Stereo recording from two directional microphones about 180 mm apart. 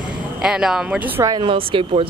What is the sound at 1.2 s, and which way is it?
Speech, 25° right (ahead or behind).